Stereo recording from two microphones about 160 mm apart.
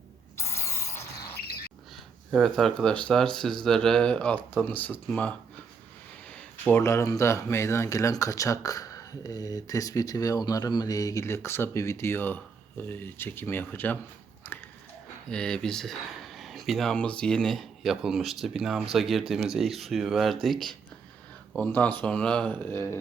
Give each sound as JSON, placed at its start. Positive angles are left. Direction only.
{"t": 0.3, "sound": "rodents", "side_deg": 15}
{"t": 2.3, "sound": "speech", "side_deg": 0}
{"t": 14.5, "sound": "a sound", "side_deg": 10}
{"t": 15.3, "sound": "speech", "side_deg": 5}